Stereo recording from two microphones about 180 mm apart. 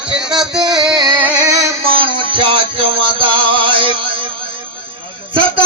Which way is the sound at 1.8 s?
30° right (ahead or behind).